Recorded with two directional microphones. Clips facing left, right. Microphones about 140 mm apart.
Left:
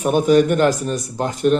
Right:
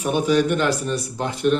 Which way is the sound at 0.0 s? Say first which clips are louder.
Left 5 dB; 45° left (ahead or behind).